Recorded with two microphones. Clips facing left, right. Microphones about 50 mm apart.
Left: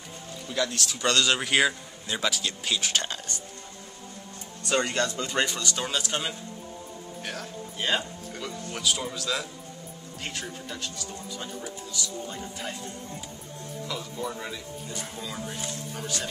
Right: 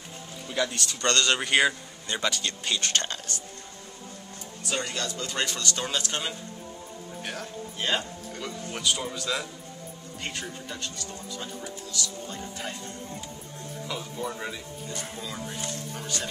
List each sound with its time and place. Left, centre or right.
0.5 s a man's voice: centre
4.8 s speech: left
5.2 s speech: centre
13.8 s speech: centre